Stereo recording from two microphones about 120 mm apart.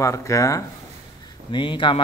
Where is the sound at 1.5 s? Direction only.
40° left (ahead or behind).